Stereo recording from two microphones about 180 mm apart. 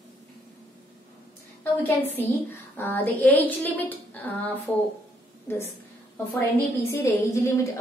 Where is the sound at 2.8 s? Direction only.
10° left (ahead or behind).